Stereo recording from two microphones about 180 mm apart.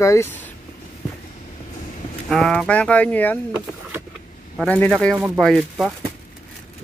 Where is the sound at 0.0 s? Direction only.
15° left (ahead or behind).